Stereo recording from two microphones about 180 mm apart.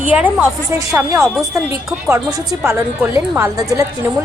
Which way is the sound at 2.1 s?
15° right (ahead or behind).